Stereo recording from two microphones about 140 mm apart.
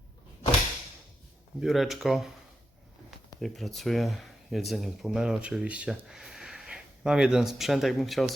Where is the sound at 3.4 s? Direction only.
Centre (ahead or behind).